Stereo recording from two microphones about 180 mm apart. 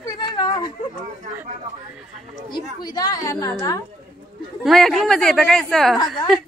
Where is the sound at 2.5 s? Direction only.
25° left (ahead or behind).